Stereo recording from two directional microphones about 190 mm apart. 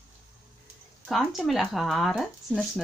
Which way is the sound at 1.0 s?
Centre (ahead or behind).